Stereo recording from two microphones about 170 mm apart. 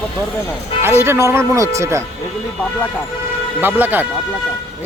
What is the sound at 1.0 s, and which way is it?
Speech, 15° right (ahead or behind).